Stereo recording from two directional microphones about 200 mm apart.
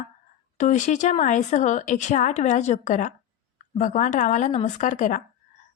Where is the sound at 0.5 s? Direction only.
35° left (ahead or behind).